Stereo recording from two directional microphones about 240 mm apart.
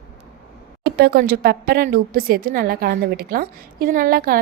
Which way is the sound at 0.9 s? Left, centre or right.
Right.